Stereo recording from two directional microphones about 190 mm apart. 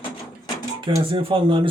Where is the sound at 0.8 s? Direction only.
25° right (ahead or behind).